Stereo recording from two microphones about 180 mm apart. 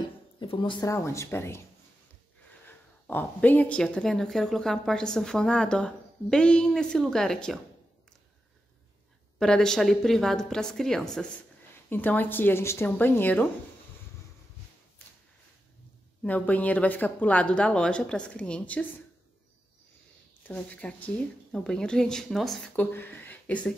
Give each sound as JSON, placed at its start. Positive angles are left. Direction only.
{"t": 0.4, "sound": "speech", "side_deg": 25}
{"t": 2.6, "sound": "speech", "side_deg": 10}
{"t": 9.4, "sound": "speech", "side_deg": 5}
{"t": 16.2, "sound": "speech", "side_deg": 10}
{"t": 20.4, "sound": "speech", "side_deg": 10}